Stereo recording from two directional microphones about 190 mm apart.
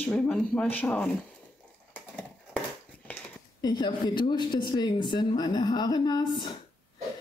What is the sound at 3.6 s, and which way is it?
A woman's voice, 20° left (ahead or behind).